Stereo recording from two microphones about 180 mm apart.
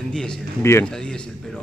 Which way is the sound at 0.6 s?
15° left (ahead or behind).